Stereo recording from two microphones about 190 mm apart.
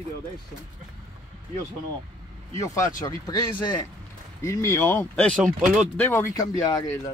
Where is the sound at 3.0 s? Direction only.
20° left (ahead or behind); by 5.8 s centre (ahead or behind).